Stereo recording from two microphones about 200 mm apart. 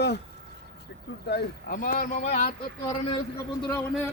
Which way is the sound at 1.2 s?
50° left (ahead or behind).